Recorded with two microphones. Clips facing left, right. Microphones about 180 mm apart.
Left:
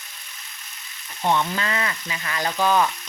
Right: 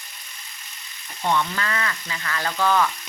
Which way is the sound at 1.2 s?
20° left (ahead or behind).